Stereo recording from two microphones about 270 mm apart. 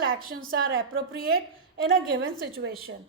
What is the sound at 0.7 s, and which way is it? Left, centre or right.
A woman's voice, right.